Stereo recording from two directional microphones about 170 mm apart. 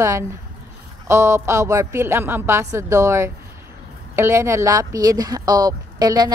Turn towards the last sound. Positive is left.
turn(degrees=-25)  # may be behind; listen again after turning